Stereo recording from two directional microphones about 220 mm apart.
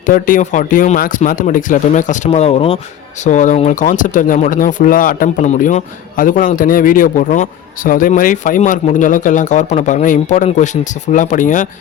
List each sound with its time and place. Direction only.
0.0 s speech: 35° left (ahead or behind)